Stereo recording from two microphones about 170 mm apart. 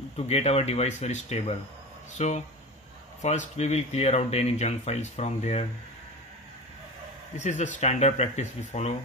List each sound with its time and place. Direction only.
0.3 s speech: 40° left (ahead or behind)
7.3 s speech: 45° left (ahead or behind)